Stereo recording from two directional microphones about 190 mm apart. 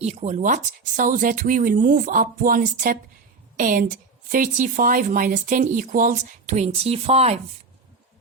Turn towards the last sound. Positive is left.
turn(degrees=-35)  # may be behind; listen again after turning